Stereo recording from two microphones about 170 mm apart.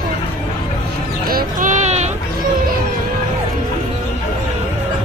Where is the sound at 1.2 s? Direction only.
55° right (ahead or behind).